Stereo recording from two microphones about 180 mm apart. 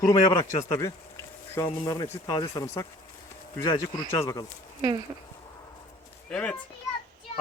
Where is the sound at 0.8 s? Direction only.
15° left (ahead or behind).